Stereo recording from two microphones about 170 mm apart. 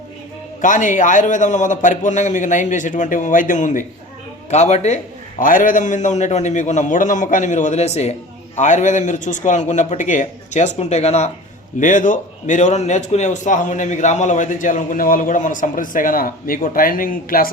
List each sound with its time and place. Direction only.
0.6 s a man's voice: 50° left (ahead or behind)
5.4 s a man's voice: 55° left (ahead or behind)